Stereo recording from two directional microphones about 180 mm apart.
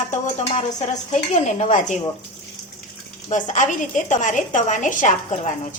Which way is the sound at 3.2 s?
45° left (ahead or behind).